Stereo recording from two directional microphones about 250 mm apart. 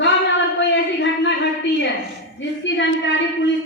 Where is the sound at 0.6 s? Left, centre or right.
Left.